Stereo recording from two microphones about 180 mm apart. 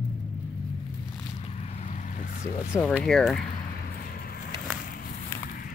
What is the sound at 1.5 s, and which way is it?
Vehicle, 35° left (ahead or behind).